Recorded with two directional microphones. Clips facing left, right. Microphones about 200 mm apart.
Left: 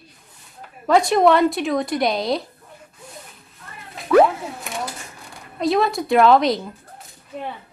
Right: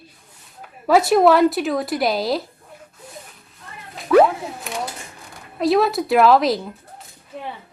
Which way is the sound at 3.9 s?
Centre (ahead or behind).